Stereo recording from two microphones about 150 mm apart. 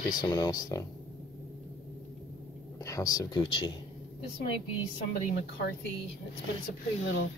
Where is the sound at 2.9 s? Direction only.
25° left (ahead or behind).